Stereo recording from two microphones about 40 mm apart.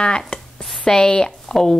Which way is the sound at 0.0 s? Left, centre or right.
Left.